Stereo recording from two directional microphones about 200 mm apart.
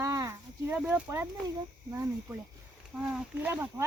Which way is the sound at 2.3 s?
10° right (ahead or behind).